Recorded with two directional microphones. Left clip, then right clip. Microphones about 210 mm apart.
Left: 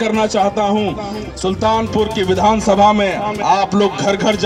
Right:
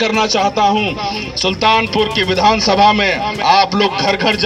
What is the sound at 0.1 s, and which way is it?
Speech, 55° left (ahead or behind).